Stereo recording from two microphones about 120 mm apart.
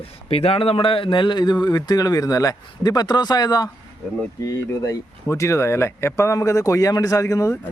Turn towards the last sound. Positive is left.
turn(degrees=25)  # may be behind; listen again after turning